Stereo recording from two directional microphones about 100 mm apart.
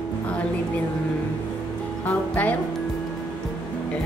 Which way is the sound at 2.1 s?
15° left (ahead or behind).